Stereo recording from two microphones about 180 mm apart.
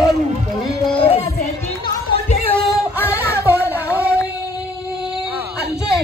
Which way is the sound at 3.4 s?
10° right (ahead or behind).